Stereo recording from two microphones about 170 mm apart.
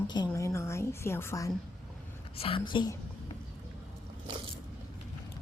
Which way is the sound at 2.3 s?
35° left (ahead or behind).